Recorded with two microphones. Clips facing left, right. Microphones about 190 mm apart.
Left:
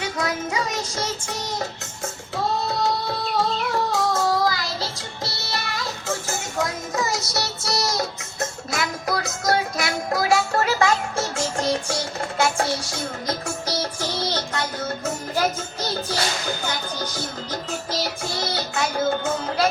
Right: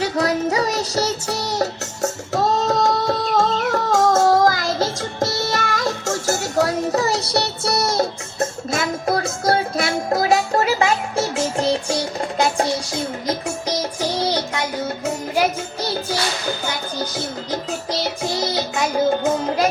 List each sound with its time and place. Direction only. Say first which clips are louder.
0.0 s music: right 7 dB; 35° right (ahead or behind)
0.9 s child singing: right 7 dB; 35° right (ahead or behind)
1.5 s music: right 7 dB; 40° right (ahead or behind)
7.3 s music: right 6 dB; 60° right (ahead or behind)
7.9 s music: right 6 dB; 25° right (ahead or behind)
13.2 s music: right 4 dB; 15° right (ahead or behind)
18.5 s music: right 4 dB; 15° right (ahead or behind)